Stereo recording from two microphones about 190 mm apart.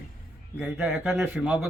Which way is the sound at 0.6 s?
5° right (ahead or behind).